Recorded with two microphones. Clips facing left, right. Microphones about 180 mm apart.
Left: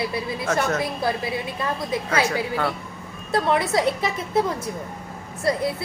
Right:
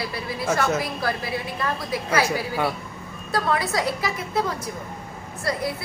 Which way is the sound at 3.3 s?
25° left (ahead or behind).